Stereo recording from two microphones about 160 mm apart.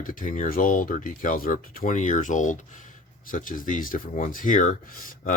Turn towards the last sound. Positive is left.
turn(degrees=55)  # may be behind; listen again after turning